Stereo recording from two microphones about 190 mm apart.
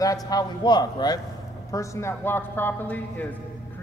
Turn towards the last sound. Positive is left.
turn(degrees=10)  # may be behind; listen again after turning